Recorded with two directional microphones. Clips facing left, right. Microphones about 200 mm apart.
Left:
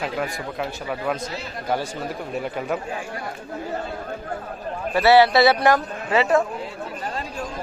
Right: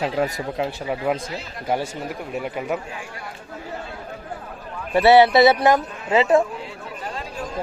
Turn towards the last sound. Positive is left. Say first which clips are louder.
# right 2 dB
turn(degrees=-25)  # may be behind; listen again after turning